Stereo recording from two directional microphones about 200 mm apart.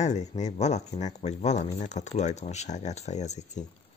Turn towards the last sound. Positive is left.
turn(degrees=35)  # may be behind; listen again after turning